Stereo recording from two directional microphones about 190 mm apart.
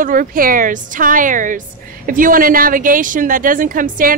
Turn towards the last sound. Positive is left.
turn(degrees=-45)  # may be behind; listen again after turning